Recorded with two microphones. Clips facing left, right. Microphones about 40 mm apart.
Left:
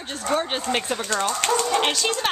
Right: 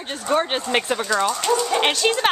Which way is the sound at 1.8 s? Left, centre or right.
Right.